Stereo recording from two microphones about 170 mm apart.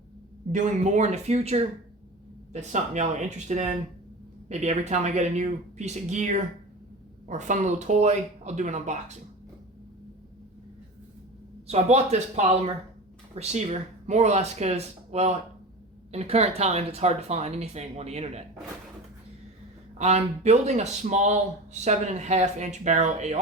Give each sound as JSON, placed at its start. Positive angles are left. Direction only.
{"t": 0.5, "sound": "a man's voice", "side_deg": -45}
{"t": 11.7, "sound": "speech", "side_deg": -40}
{"t": 20.0, "sound": "a man's voice", "side_deg": -40}